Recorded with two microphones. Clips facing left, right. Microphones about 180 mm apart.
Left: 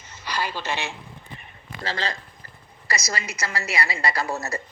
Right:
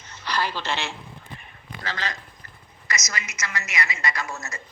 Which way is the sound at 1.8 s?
30° left (ahead or behind).